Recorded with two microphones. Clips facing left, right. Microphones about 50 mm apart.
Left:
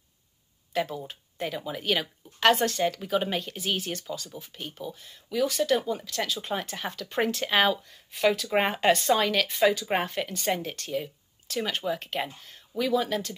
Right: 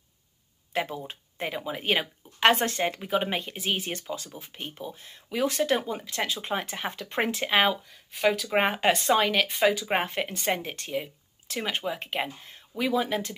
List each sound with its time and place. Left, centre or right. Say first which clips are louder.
0.7 s speech: left 1 dB; right